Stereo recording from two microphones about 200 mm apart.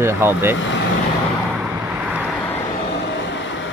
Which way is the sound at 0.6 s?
65° left (ahead or behind).